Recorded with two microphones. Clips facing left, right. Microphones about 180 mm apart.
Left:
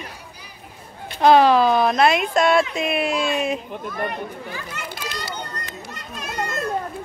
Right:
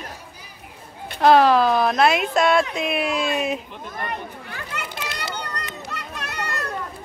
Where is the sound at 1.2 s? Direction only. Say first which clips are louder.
Left 1 dB; centre (ahead or behind).